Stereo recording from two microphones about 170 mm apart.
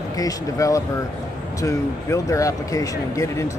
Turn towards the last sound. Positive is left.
turn(degrees=20)  # may be behind; listen again after turning